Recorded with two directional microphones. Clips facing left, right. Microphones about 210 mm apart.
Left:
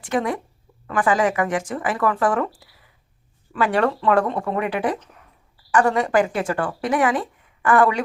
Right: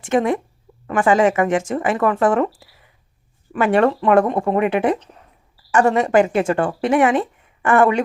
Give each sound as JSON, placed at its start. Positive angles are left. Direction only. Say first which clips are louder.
{"t": 0.0, "sound": "speech", "louder": "right 5 dB", "side_deg": -25}